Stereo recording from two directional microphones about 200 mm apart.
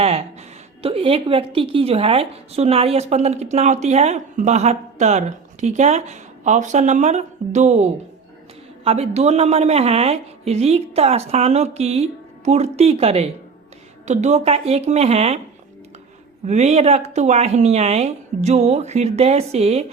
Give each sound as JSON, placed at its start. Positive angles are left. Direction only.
{"t": 0.0, "sound": "a sound", "side_deg": -30}
{"t": 0.8, "sound": "a woman's voice", "side_deg": -30}
{"t": 16.5, "sound": "a woman's voice", "side_deg": -35}